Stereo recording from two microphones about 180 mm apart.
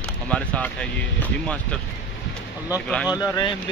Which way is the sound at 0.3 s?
5° left (ahead or behind).